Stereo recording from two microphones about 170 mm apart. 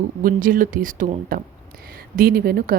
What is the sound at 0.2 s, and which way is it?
Speech, 55° right (ahead or behind).